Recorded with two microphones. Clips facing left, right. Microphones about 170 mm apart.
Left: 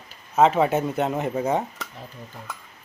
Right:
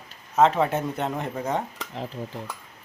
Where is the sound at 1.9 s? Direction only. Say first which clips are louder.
Right 8 dB; 90° right.